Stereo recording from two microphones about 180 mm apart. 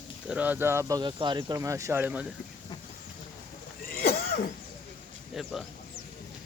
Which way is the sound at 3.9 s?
60° left (ahead or behind).